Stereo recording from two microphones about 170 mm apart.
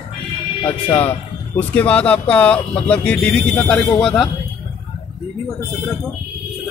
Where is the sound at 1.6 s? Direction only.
10° left (ahead or behind).